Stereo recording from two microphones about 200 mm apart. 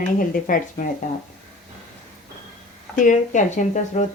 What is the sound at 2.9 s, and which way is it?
Speech, 40° left (ahead or behind).